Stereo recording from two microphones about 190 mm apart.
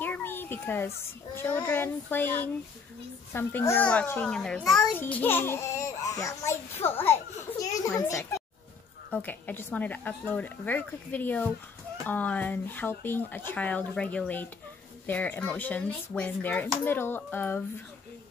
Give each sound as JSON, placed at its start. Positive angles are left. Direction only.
{"t": 0.0, "sound": "a child's voice", "side_deg": 10}